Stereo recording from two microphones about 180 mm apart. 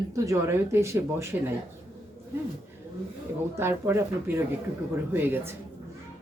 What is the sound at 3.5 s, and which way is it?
Speech, 15° right (ahead or behind).